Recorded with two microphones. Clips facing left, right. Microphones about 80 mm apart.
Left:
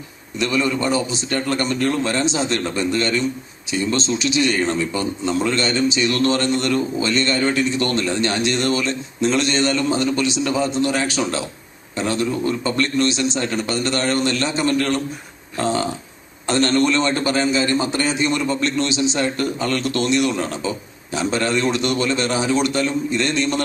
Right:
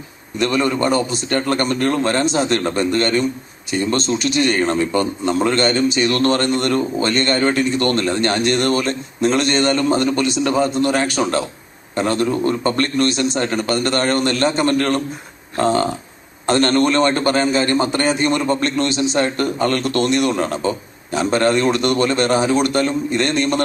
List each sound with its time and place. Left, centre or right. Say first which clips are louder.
0.3 s a man's voice: right 3 dB; right